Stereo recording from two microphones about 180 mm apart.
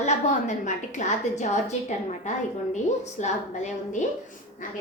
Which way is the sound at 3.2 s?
40° left (ahead or behind).